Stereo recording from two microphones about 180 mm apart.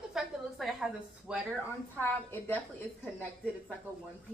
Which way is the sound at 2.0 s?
10° left (ahead or behind).